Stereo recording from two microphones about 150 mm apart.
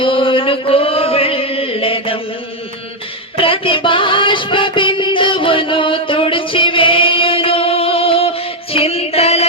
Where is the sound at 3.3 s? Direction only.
35° left (ahead or behind).